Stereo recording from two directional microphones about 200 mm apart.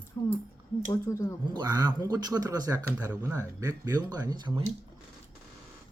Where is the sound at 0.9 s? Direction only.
15° left (ahead or behind).